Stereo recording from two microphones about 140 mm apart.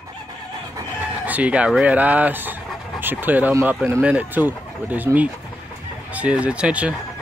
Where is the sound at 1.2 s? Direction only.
10° right (ahead or behind).